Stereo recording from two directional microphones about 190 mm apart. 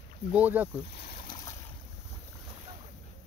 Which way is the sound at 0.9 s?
55° left (ahead or behind).